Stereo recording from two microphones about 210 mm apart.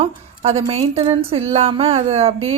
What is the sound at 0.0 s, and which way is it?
Speech, 30° right (ahead or behind).